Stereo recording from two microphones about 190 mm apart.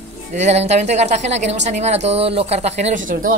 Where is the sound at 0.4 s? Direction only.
35° right (ahead or behind).